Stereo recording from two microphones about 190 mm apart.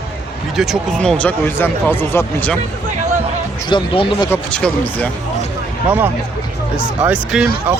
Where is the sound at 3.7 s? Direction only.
25° left (ahead or behind).